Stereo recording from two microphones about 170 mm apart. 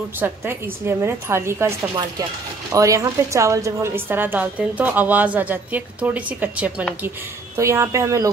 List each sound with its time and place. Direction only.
0.2 s a woman's voice: 15° right (ahead or behind)